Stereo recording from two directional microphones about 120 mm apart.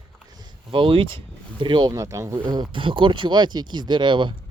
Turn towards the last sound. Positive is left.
turn(degrees=-40)  # may be behind; listen again after turning